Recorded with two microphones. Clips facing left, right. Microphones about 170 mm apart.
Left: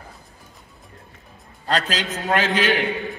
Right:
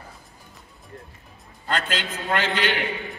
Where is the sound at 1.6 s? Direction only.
35° left (ahead or behind).